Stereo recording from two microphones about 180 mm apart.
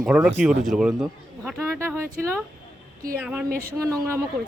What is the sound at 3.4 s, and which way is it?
Speech, 55° right (ahead or behind).